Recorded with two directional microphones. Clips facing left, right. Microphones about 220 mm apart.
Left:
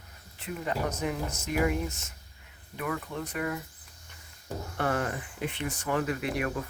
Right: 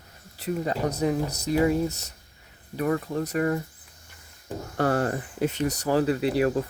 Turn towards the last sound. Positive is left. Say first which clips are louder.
# right 8 dB
turn(degrees=-30)  # may be behind; listen again after turning